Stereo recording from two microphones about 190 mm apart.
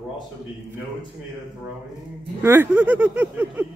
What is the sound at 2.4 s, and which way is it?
Speech, 10° right (ahead or behind).